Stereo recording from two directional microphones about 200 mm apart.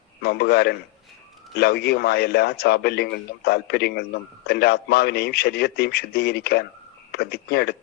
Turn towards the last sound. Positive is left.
turn(degrees=55)  # may be behind; listen again after turning